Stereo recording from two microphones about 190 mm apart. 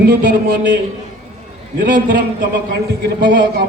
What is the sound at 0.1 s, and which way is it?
Speech, 65° right (ahead or behind).